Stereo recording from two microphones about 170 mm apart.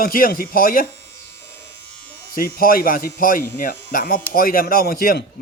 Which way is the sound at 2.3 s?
60° left (ahead or behind).